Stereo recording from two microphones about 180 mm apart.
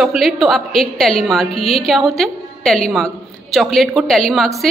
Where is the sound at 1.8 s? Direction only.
Centre (ahead or behind).